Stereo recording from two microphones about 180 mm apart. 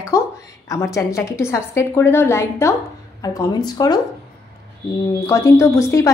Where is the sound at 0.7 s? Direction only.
15° left (ahead or behind).